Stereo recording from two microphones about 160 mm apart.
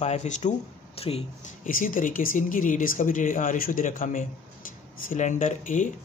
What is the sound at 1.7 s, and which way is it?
Speech, 60° left (ahead or behind).